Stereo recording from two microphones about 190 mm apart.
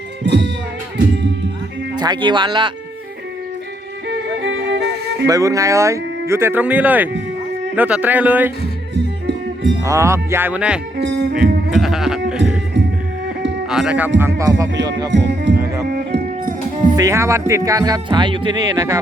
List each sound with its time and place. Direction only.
0.3 s music: 65° right (ahead or behind)
2.0 s speech: 25° right (ahead or behind)
4.1 s music: 70° right (ahead or behind)
5.2 s speech: 15° right (ahead or behind)
9.0 s music: 70° right (ahead or behind)
9.8 s speech: 15° right (ahead or behind)
10.9 s music: 60° right (ahead or behind)
11.7 s sheep: centre (ahead or behind)
13.7 s speech: 5° right (ahead or behind)
15.1 s music: 65° right (ahead or behind)
15.9 s music: 50° right (ahead or behind)
17.0 s speech: 15° right (ahead or behind)